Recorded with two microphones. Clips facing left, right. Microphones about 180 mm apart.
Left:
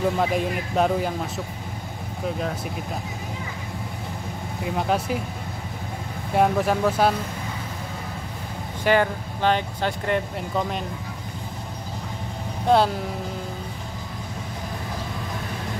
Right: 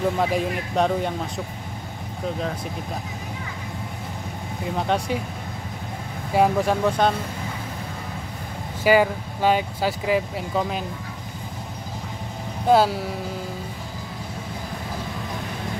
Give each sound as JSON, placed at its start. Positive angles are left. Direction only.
{"t": 0.2, "sound": "speech", "side_deg": 0}
{"t": 4.7, "sound": "speech", "side_deg": 5}
{"t": 6.3, "sound": "speech", "side_deg": 0}
{"t": 8.8, "sound": "speech", "side_deg": -10}
{"t": 12.6, "sound": "speech", "side_deg": -5}